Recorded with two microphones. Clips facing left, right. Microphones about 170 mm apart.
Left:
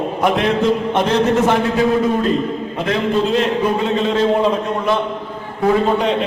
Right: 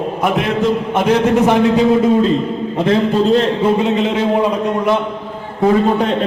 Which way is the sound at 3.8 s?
20° right (ahead or behind).